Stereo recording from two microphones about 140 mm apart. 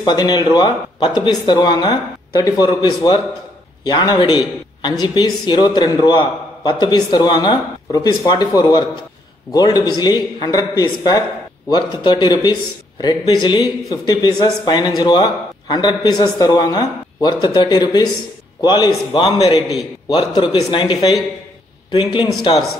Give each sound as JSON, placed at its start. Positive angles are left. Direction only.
{"t": 0.0, "sound": "speech", "side_deg": 30}